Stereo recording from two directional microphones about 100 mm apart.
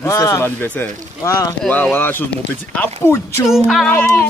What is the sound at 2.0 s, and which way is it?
A man's voice, 20° left (ahead or behind).